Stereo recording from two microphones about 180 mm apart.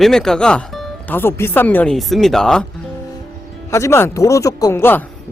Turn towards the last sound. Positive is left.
turn(degrees=10)  # may be behind; listen again after turning